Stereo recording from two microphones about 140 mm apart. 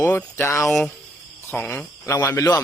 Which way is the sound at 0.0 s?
15° left (ahead or behind).